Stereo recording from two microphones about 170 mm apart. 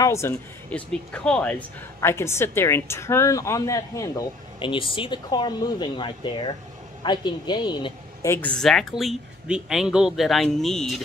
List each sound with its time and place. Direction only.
0.0 s speech: 15° left (ahead or behind)
4.6 s speech: 30° left (ahead or behind)
8.3 s a woman's voice: 10° left (ahead or behind)